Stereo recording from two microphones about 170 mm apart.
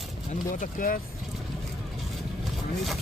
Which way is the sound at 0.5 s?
55° left (ahead or behind).